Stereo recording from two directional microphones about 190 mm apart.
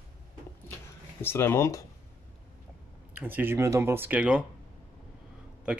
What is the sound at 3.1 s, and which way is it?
Speech, 10° right (ahead or behind).